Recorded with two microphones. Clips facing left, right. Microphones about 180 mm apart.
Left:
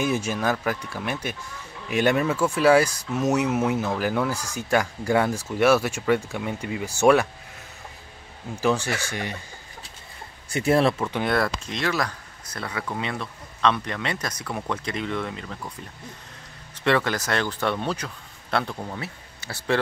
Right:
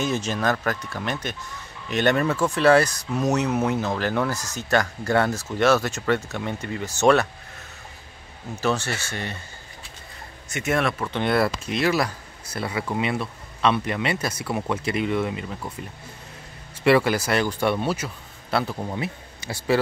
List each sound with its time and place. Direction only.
0.0 s speech: 10° left (ahead or behind)
8.5 s speech: 15° left (ahead or behind)
10.5 s speech: 30° left (ahead or behind)
11.0 s speech: 5° left (ahead or behind)
11.3 s speech: 5° right (ahead or behind)
16.8 s speech: 10° right (ahead or behind)